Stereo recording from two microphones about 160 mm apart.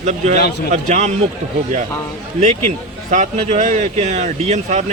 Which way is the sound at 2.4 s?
45° right (ahead or behind).